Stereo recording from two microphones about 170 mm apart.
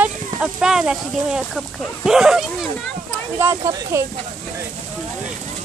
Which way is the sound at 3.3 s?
15° right (ahead or behind).